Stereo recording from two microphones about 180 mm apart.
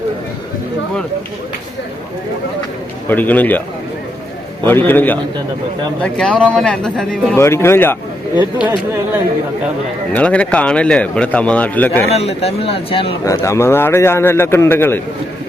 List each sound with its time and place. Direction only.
3.1 s a man's voice: 10° left (ahead or behind)
4.6 s a man's voice: 10° left (ahead or behind)
7.3 s a man's voice: 15° left (ahead or behind)
8.4 s speech: 10° right (ahead or behind)
10.1 s a man's voice: 5° left (ahead or behind)
12.1 s speech: 35° left (ahead or behind)
13.2 s a man's voice: 15° left (ahead or behind)